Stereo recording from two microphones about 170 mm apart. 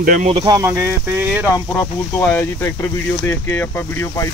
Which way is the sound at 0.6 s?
10° right (ahead or behind).